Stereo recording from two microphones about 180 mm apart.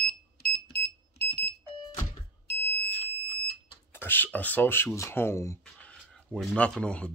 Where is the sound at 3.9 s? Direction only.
10° left (ahead or behind).